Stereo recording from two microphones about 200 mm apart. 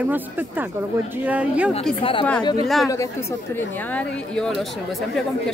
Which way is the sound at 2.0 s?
25° left (ahead or behind).